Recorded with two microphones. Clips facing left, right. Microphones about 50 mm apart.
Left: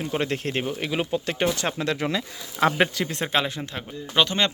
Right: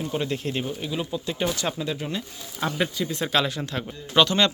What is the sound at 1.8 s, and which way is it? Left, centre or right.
Speech, left.